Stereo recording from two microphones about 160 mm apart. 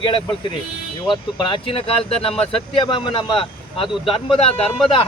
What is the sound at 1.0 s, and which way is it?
Speech, 30° left (ahead or behind).